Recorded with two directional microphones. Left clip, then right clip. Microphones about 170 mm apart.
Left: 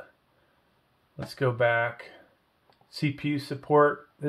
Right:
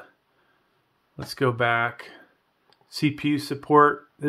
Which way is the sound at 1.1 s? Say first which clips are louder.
Right 3 dB; 50° right (ahead or behind).